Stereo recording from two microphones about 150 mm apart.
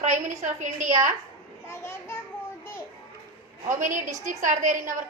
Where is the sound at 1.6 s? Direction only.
15° left (ahead or behind).